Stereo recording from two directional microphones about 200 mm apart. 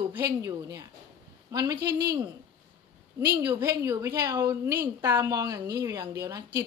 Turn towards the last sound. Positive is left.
turn(degrees=-15)  # may be behind; listen again after turning